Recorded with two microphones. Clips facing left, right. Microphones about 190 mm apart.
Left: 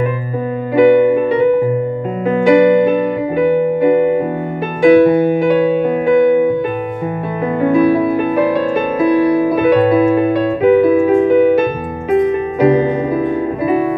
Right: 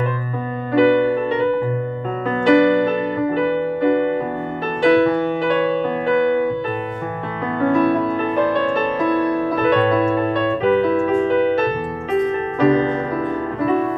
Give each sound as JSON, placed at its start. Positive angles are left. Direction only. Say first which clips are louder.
{"t": 0.7, "sound": "piano", "louder": "left 5 dB", "side_deg": 10}
{"t": 2.2, "sound": "music", "louder": "left 4 dB", "side_deg": 10}
{"t": 7.6, "sound": "music", "louder": "left 4 dB", "side_deg": 10}